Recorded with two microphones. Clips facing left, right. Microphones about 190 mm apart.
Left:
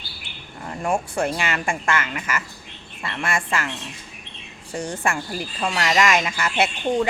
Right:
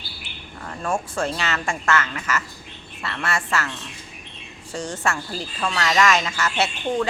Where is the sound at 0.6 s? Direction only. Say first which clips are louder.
Left 2 dB; 20° left (ahead or behind).